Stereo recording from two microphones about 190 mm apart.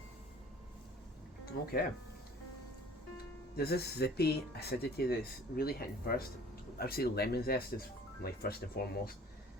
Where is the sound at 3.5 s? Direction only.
55° left (ahead or behind).